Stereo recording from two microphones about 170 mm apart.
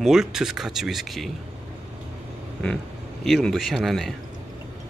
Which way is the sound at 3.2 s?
Centre (ahead or behind).